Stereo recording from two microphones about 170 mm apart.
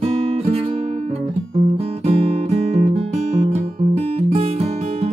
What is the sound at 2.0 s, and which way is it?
Music, 35° right (ahead or behind).